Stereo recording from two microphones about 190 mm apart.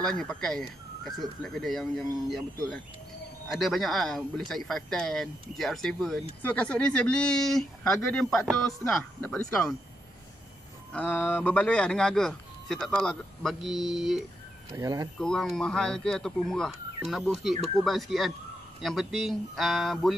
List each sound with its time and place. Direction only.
0.0 s speech: 5° left (ahead or behind)
10.9 s speech: 10° left (ahead or behind)
14.7 s speech: 20° right (ahead or behind)
15.1 s speech: 5° left (ahead or behind)